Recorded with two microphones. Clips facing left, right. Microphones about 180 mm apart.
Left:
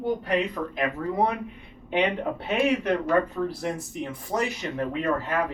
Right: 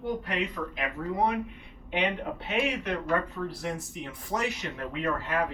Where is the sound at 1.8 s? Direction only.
40° left (ahead or behind).